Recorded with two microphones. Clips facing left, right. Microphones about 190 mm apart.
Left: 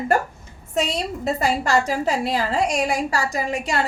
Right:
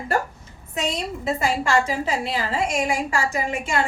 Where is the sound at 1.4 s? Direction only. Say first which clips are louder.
Left 1 dB; 40° left (ahead or behind).